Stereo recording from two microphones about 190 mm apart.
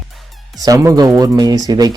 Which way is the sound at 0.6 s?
15° right (ahead or behind).